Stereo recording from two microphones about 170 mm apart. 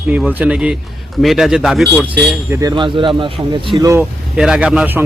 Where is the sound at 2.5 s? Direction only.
20° right (ahead or behind).